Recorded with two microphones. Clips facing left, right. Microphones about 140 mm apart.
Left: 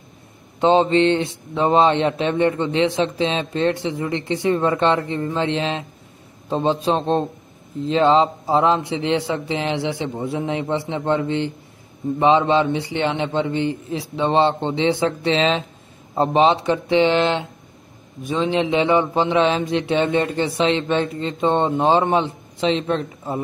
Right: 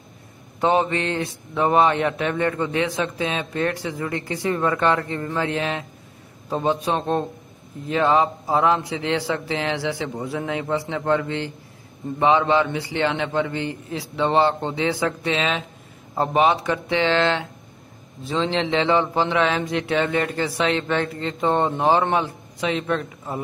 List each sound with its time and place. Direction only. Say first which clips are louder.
0.6 s speech: left 5 dB; 25° left (ahead or behind)